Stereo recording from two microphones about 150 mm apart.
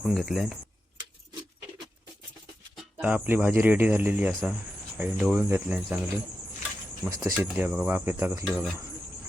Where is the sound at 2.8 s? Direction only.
10° right (ahead or behind).